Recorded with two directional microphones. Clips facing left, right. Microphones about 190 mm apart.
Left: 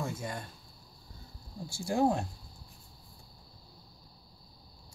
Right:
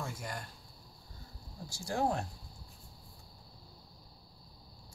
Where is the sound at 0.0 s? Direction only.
25° left (ahead or behind).